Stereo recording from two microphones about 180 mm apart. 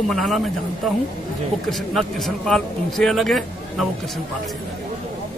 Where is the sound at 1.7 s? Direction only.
Centre (ahead or behind).